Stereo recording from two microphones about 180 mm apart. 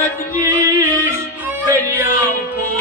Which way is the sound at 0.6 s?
15° right (ahead or behind).